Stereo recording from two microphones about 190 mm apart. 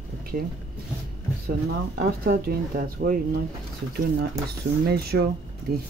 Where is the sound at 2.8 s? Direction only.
50° right (ahead or behind).